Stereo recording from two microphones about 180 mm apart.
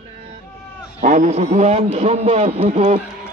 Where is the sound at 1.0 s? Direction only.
40° right (ahead or behind).